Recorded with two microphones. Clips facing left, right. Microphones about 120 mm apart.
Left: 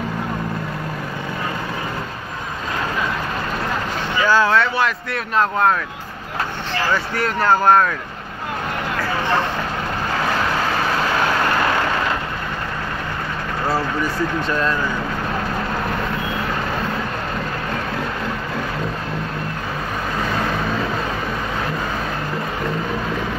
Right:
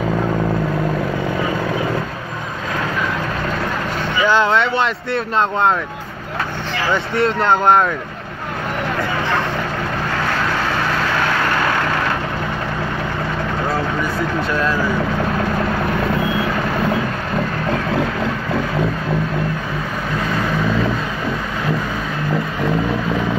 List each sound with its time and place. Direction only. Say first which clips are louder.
4.2 s speech: right 1 dB; 20° right (ahead or behind)
6.9 s speech: right 6 dB; 25° right (ahead or behind)
14.5 s speech: right 2 dB; 5° right (ahead or behind)